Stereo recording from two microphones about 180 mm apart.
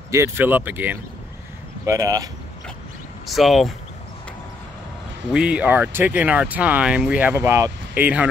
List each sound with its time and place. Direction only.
0.1 s speech: 15° right (ahead or behind)
3.3 s speech: centre (ahead or behind)
5.3 s speech: 5° right (ahead or behind)